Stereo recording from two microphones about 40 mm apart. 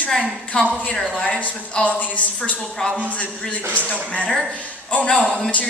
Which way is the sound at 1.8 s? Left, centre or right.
Left.